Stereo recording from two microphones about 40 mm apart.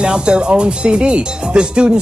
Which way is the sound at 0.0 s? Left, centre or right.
Right.